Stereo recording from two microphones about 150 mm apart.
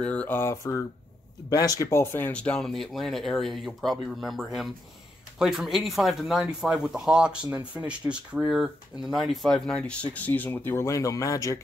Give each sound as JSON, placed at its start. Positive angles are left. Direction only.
{"t": 0.0, "sound": "mantra", "side_deg": 10}
{"t": 1.5, "sound": "speech", "side_deg": 25}